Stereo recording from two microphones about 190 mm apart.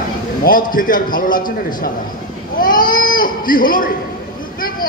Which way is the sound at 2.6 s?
45° left (ahead or behind).